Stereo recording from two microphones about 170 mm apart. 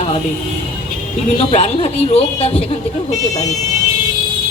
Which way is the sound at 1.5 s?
35° left (ahead or behind).